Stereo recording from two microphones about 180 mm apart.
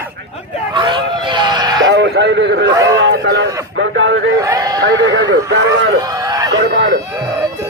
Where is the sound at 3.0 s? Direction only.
85° right.